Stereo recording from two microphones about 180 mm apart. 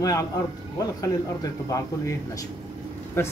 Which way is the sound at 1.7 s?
15° left (ahead or behind).